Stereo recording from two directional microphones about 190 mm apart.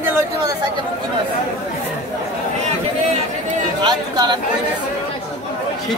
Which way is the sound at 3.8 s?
20° right (ahead or behind).